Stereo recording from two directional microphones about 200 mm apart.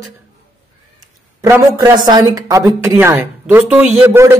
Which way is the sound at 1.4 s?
15° right (ahead or behind).